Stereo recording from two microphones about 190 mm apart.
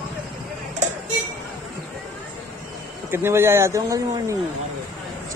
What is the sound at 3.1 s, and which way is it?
Speech, 10° right (ahead or behind).